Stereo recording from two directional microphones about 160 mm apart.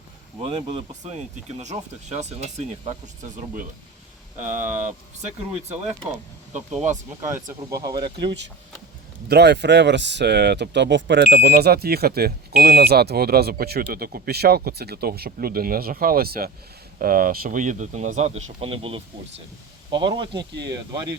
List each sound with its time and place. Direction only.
0.4 s speech: 35° right (ahead or behind)
4.4 s speech: 50° right (ahead or behind)
6.5 s speech: 10° right (ahead or behind)
7.7 s speech: 25° right (ahead or behind)
9.3 s speech: 90° right; by 21.1 s 25° right (ahead or behind)